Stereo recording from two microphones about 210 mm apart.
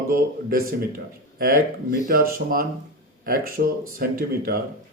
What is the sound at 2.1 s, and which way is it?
A man's voice, 45° right (ahead or behind).